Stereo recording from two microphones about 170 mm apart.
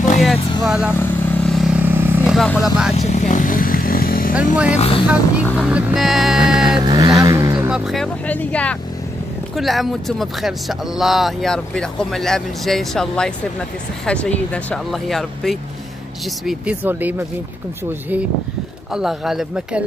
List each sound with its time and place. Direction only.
0.2 s vehicle: centre (ahead or behind)
2.3 s speech: centre (ahead or behind)
3.0 s vehicle: 45° left (ahead or behind); by 4.4 s 60° left (ahead or behind)
4.6 s speech: 40° left (ahead or behind)
5.0 s speech: 5° right (ahead or behind)
6.8 s vehicle: 25° right (ahead or behind)
7.7 s speech: centre (ahead or behind)
18.9 s speech: 5° right (ahead or behind)